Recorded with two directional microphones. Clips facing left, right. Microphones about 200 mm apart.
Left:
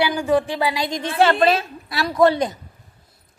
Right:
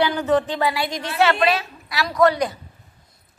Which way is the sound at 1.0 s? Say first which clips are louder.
Left 3 dB; 25° left (ahead or behind).